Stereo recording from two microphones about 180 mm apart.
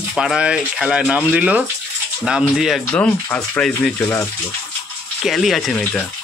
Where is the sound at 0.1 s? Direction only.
Centre (ahead or behind).